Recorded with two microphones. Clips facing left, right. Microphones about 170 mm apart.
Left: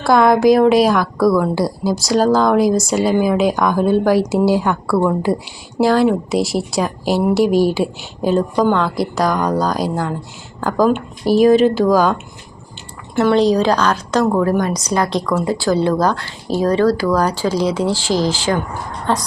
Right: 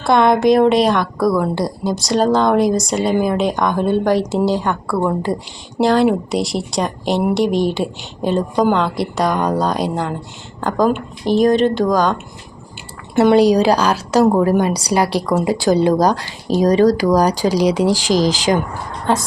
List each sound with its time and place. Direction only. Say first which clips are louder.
0.0 s a woman's voice: left 1 dB; centre (ahead or behind)
13.1 s speech: right 2 dB; 15° right (ahead or behind)